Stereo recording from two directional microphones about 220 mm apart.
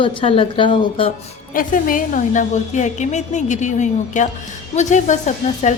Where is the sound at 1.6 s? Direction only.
40° left (ahead or behind).